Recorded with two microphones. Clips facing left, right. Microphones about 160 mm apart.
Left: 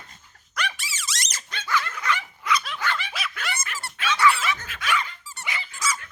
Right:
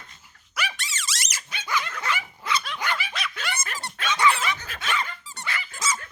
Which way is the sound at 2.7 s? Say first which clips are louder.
Even; 15° right (ahead or behind).